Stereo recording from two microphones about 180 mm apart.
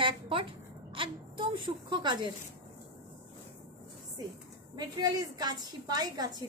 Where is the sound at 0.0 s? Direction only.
30° right (ahead or behind).